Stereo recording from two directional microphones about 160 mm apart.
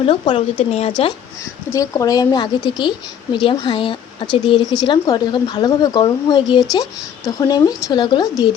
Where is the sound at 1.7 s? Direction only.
20° left (ahead or behind).